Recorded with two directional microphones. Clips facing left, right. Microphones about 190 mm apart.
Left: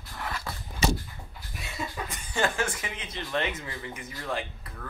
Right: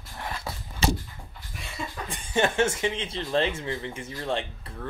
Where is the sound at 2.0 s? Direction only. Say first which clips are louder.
Right 5 dB; 25° right (ahead or behind).